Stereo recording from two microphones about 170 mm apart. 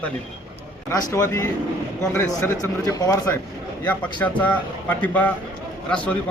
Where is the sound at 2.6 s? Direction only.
20° left (ahead or behind).